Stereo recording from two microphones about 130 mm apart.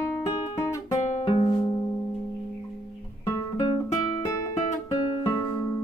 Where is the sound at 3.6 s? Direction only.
35° left (ahead or behind).